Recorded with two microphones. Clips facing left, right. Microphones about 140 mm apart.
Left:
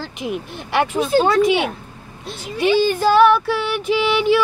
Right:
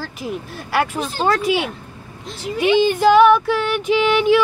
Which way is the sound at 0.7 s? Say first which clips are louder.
Left 3 dB; centre (ahead or behind).